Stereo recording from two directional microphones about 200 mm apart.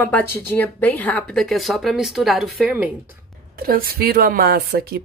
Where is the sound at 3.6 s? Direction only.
45° right (ahead or behind).